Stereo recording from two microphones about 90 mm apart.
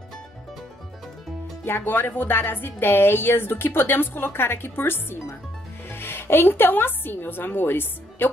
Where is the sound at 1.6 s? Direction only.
25° left (ahead or behind).